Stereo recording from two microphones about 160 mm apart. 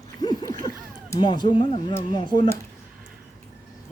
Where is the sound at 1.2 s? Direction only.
30° left (ahead or behind).